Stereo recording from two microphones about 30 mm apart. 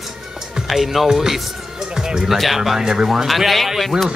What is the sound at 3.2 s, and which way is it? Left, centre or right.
Speech, centre.